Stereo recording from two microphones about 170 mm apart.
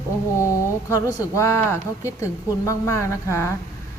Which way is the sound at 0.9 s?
15° left (ahead or behind).